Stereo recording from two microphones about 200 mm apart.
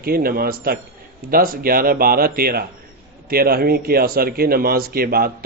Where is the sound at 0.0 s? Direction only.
50° right (ahead or behind).